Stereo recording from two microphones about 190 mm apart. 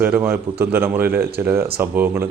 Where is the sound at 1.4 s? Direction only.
10° right (ahead or behind).